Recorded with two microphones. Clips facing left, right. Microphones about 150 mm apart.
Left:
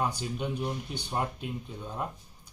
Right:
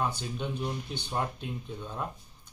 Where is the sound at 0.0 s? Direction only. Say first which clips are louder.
Left 1 dB; 10° left (ahead or behind).